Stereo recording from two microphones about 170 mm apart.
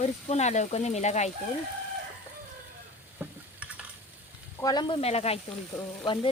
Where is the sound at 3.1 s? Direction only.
10° right (ahead or behind).